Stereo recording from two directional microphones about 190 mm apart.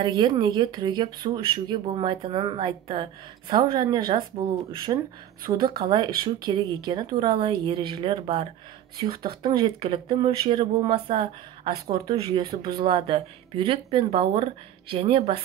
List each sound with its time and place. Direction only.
0.0 s speech: 25° right (ahead or behind)